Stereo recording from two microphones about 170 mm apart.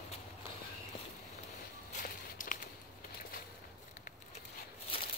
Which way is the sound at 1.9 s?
50° left (ahead or behind).